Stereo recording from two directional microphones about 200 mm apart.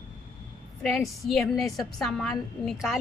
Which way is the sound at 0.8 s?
Centre (ahead or behind).